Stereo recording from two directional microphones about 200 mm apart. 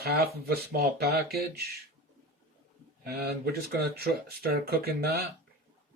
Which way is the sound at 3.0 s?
50° right (ahead or behind).